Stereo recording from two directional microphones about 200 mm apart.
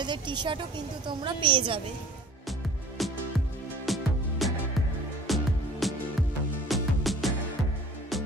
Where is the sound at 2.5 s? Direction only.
Centre (ahead or behind).